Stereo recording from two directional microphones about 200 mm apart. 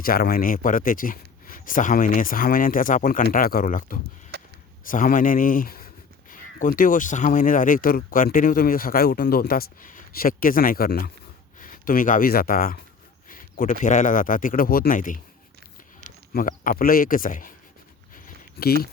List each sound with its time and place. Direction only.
0.0 s speech: 45° left (ahead or behind)
4.3 s a sound: 55° right (ahead or behind)
4.9 s speech: 40° left (ahead or behind)
13.2 s a sound: 45° left (ahead or behind)
13.8 s speech: 40° left (ahead or behind)
16.3 s speech: 45° left (ahead or behind)
18.6 s speech: 50° left (ahead or behind)